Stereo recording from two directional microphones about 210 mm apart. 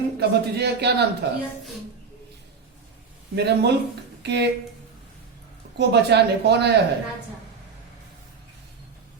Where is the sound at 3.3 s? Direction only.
50° right (ahead or behind).